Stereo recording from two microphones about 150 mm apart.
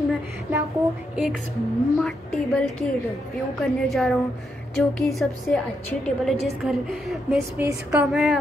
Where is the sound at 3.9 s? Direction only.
Centre (ahead or behind).